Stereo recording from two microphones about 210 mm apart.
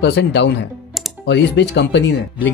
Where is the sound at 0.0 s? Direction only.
55° left (ahead or behind).